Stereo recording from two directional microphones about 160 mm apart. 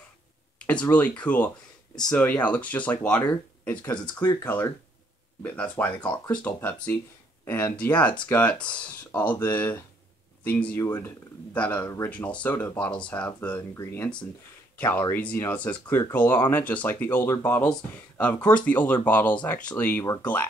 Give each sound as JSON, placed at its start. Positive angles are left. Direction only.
{"t": 0.6, "sound": "speech", "side_deg": 10}